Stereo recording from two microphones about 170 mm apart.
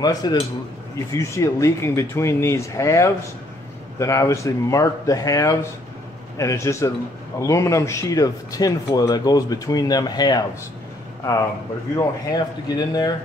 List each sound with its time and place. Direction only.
0.0 s speech: 25° left (ahead or behind)
12.3 s speech: 25° left (ahead or behind)